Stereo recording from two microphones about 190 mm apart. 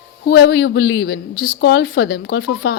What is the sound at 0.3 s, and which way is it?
A woman's voice, 60° left (ahead or behind).